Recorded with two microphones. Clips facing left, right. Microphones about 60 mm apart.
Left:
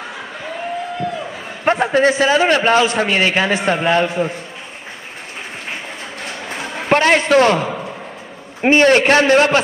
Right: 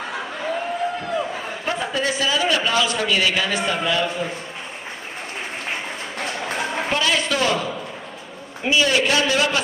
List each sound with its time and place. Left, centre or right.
1.6 s a man's voice: left
6.9 s a man's voice: left